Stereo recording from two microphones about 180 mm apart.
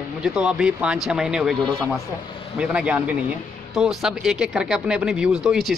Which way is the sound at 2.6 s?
5° right (ahead or behind).